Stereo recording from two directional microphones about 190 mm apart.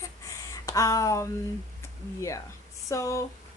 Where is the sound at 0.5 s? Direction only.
15° left (ahead or behind).